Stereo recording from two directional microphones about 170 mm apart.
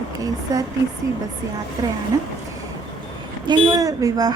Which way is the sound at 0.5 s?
20° right (ahead or behind).